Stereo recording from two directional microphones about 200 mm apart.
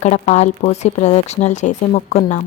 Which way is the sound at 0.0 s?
35° left (ahead or behind).